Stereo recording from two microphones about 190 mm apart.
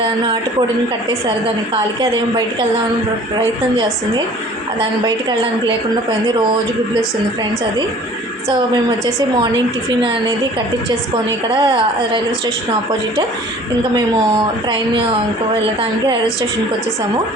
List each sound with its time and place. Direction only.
11.5 s a woman's voice: 25° right (ahead or behind)